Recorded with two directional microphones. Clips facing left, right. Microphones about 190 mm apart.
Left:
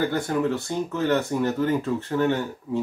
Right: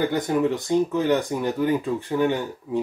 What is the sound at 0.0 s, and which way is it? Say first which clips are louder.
Speech: right 2 dB; 20° right (ahead or behind).